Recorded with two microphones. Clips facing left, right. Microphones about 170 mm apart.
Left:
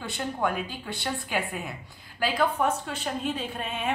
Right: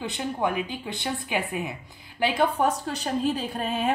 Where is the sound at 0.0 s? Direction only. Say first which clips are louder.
Right 2 dB; 20° right (ahead or behind).